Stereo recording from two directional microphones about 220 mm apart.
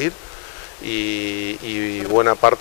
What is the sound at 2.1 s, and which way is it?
Speech, 25° left (ahead or behind).